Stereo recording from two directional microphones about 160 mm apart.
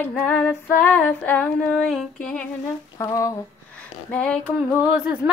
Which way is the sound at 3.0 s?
20° left (ahead or behind).